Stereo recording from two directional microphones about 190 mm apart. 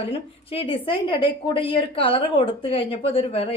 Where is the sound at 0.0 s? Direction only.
30° left (ahead or behind).